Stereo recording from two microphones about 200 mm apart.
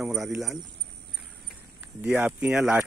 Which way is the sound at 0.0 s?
Centre (ahead or behind).